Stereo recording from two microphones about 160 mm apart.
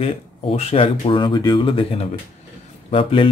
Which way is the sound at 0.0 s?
40° left (ahead or behind).